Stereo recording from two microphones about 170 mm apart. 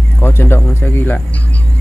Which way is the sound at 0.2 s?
15° left (ahead or behind).